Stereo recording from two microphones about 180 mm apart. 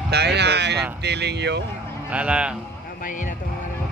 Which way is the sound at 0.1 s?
70° right (ahead or behind).